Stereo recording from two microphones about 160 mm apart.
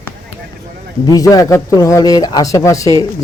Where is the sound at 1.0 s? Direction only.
20° left (ahead or behind).